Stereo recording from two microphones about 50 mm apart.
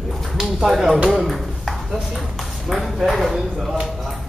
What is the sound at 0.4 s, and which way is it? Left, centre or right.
Speech, centre.